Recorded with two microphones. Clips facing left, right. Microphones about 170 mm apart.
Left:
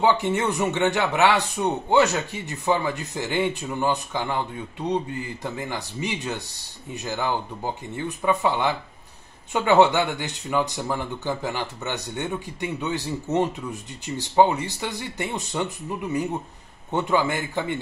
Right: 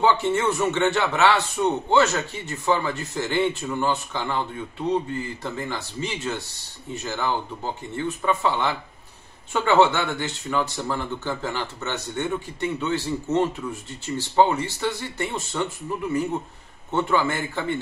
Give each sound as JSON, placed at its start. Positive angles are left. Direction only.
{"t": 0.0, "sound": "speech", "side_deg": 15}
{"t": 16.9, "sound": "speech", "side_deg": 15}